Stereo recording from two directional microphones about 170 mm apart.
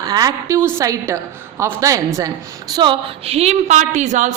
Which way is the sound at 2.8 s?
30° right (ahead or behind).